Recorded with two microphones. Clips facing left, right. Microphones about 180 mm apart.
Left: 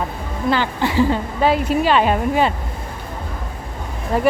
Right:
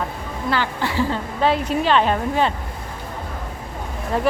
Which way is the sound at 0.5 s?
20° left (ahead or behind).